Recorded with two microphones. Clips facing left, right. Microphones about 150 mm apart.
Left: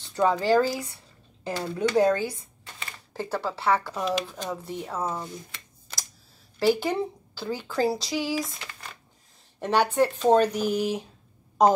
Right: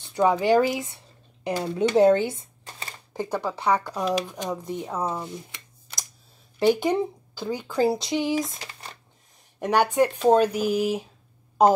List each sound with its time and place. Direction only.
0.0 s speech: 15° right (ahead or behind)
5.1 s a sound: 15° right (ahead or behind)
6.6 s speech: 20° right (ahead or behind)
9.6 s speech: 15° right (ahead or behind)